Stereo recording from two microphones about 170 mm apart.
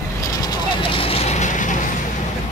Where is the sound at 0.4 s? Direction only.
25° left (ahead or behind); by 1.9 s 50° left (ahead or behind).